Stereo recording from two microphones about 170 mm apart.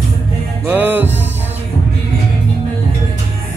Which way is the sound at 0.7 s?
10° right (ahead or behind).